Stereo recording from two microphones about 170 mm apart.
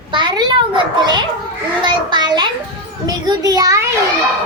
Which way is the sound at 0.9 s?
25° right (ahead or behind).